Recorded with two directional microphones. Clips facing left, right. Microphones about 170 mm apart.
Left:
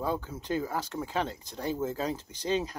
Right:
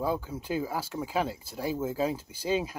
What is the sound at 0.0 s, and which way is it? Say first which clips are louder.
Speech: right 2 dB; 10° right (ahead or behind).